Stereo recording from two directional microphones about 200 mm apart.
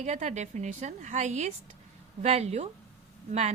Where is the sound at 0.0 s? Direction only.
35° right (ahead or behind).